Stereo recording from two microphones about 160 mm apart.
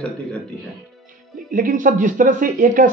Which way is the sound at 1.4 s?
60° right (ahead or behind).